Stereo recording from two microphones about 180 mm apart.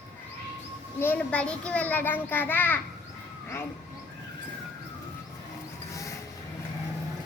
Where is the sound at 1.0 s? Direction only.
10° left (ahead or behind).